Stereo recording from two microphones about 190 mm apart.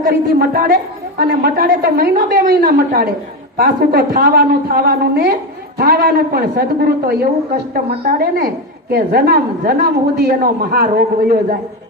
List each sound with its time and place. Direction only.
0.0 s a woman's voice: 50° right (ahead or behind)